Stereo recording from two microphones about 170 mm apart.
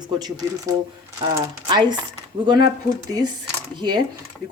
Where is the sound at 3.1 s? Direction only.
20° right (ahead or behind).